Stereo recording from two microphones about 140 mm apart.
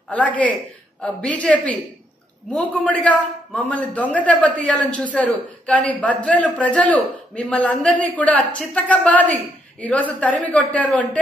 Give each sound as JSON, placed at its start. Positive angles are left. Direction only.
{"t": 0.1, "sound": "a man's voice", "side_deg": 10}